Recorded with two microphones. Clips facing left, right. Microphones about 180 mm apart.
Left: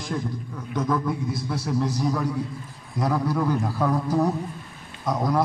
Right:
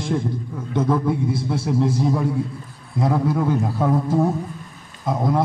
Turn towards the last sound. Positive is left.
turn(degrees=-25)  # may be behind; listen again after turning